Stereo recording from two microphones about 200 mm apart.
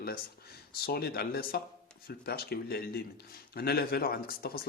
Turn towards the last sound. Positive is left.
turn(degrees=50)  # may be behind; listen again after turning